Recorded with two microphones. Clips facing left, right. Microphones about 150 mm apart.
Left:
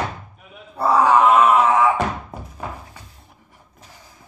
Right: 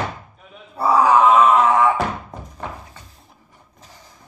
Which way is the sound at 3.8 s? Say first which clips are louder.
Even; 10° left (ahead or behind).